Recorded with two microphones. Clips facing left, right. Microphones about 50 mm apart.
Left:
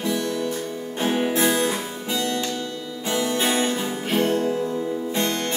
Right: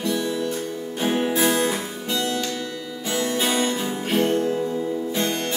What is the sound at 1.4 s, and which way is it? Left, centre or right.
Music, centre.